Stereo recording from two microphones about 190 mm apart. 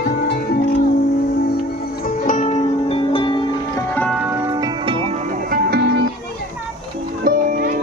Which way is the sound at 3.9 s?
5° left (ahead or behind).